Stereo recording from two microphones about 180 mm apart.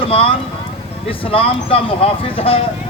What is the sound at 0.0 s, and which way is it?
Vehicle, 30° left (ahead or behind).